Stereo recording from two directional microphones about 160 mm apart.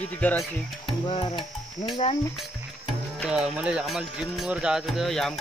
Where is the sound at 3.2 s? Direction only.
5° right (ahead or behind).